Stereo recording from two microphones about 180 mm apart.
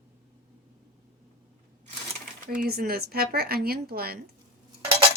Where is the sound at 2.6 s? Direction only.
55° right (ahead or behind).